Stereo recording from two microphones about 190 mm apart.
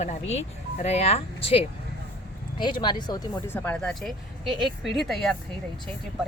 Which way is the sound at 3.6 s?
5° left (ahead or behind).